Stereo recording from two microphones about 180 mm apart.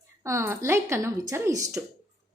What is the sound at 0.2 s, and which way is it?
A woman's voice, 15° right (ahead or behind).